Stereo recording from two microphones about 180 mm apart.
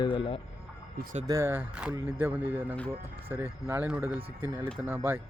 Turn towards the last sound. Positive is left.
turn(degrees=-10)  # may be behind; listen again after turning